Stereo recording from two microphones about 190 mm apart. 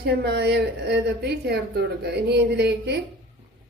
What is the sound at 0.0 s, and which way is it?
A woman's voice, 55° right (ahead or behind).